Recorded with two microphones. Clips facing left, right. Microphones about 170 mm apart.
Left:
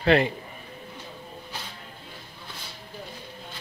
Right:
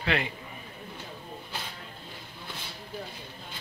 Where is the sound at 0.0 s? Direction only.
40° left (ahead or behind).